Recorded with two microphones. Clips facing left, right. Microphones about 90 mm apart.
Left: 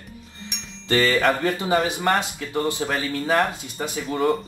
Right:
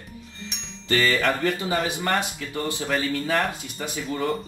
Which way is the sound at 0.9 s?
25° left (ahead or behind).